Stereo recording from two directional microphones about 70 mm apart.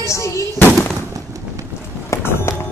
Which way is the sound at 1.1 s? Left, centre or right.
Right.